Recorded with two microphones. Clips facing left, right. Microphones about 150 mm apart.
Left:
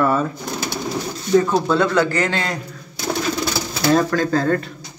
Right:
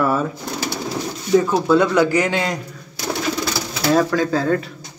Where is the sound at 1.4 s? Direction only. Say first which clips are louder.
Right 1 dB; 10° right (ahead or behind).